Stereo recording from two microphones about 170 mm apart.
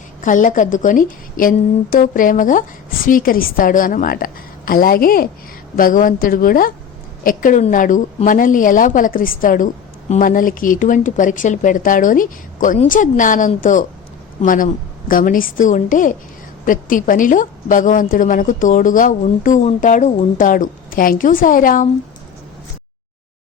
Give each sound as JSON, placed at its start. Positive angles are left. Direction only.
{"t": 0.2, "sound": "a woman's voice", "side_deg": 50}